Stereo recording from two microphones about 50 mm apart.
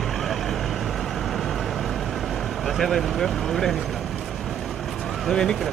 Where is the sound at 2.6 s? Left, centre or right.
Centre.